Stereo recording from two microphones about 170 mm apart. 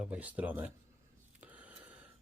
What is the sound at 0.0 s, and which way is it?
Speech, 10° right (ahead or behind).